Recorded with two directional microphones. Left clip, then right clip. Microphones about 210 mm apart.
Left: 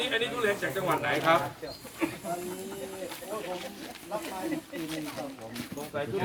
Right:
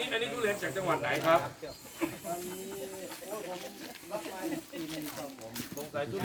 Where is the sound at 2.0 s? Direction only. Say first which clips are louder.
Left 3 dB; 50° left (ahead or behind).